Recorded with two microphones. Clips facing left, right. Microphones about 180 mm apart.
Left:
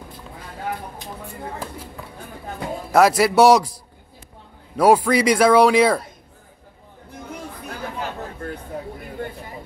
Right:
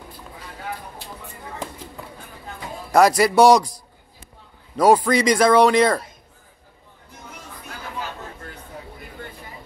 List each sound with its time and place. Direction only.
0.9 s a sound: 15° left (ahead or behind)
2.9 s a man's voice: 5° left (ahead or behind)
4.7 s speech: 5° left (ahead or behind)